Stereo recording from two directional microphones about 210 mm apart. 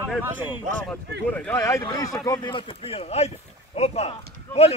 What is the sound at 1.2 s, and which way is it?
A man's voice, 5° left (ahead or behind).